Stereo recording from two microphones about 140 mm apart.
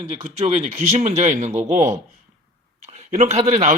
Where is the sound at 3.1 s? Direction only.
50° right (ahead or behind).